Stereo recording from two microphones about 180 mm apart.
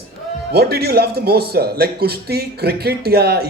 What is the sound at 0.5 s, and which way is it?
Speech, 60° right (ahead or behind).